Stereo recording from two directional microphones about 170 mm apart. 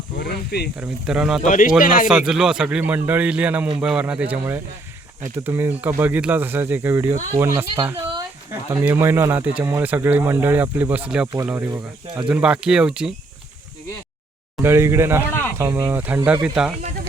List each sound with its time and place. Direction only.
0.2 s snake: 75° left (ahead or behind)
0.8 s speech: 5° right (ahead or behind)
1.4 s a man's voice: 50° left (ahead or behind)
2.0 s speech: 5° right (ahead or behind)
11.7 s speech: 20° right (ahead or behind)
12.3 s speech: 5° right (ahead or behind)
14.6 s speech: 15° right (ahead or behind)